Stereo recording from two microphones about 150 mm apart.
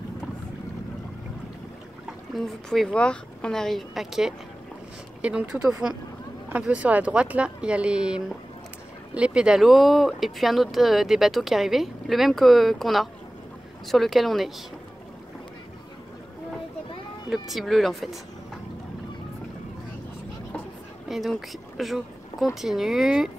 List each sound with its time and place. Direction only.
2.3 s speech: centre (ahead or behind)
17.3 s speech: centre (ahead or behind)
21.1 s speech: centre (ahead or behind)